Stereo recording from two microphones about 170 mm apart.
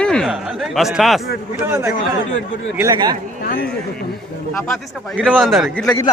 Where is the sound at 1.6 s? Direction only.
15° right (ahead or behind).